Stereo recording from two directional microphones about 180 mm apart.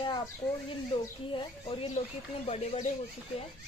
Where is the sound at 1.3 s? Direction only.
30° left (ahead or behind).